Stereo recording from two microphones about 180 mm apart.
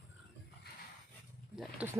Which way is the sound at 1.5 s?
10° right (ahead or behind).